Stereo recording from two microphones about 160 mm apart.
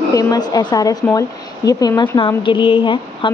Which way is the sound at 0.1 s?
20° left (ahead or behind).